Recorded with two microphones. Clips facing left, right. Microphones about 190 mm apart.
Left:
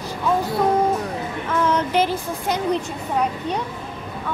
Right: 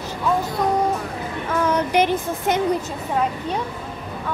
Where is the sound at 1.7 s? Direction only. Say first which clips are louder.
Right 3 dB; 15° right (ahead or behind).